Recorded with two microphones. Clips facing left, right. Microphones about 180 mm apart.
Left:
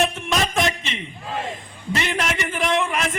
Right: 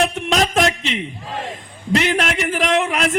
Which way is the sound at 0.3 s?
80° right.